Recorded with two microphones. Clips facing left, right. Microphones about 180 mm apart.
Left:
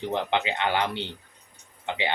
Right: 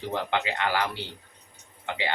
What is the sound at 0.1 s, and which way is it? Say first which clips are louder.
Speech: left 1 dB; 20° left (ahead or behind).